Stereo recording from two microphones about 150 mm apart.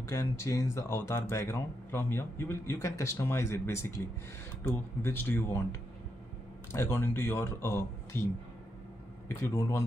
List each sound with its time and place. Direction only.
0.0 s a man's voice: 20° left (ahead or behind)
9.3 s a man's voice: 15° left (ahead or behind)